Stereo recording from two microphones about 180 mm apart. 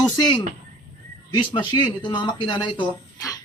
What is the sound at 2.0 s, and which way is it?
Speech, 25° left (ahead or behind).